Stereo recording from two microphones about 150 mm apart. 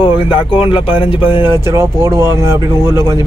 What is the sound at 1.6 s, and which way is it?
Speech, 20° right (ahead or behind).